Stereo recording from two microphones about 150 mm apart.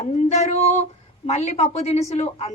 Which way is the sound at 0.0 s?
45° left (ahead or behind).